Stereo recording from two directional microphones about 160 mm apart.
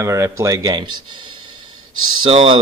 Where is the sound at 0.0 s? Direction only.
20° right (ahead or behind).